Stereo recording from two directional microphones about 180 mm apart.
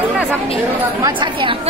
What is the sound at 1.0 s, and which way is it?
Speech, 25° right (ahead or behind).